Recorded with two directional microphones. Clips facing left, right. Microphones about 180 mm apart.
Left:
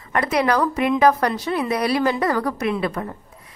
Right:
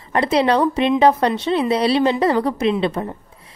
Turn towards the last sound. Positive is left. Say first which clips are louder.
# right 4 dB
turn(degrees=-25)  # may be behind; listen again after turning